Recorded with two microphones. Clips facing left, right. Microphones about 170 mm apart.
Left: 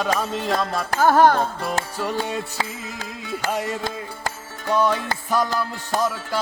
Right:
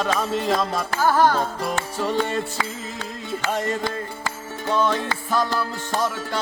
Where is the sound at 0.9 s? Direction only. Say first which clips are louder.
Left 4 dB; 50° left (ahead or behind).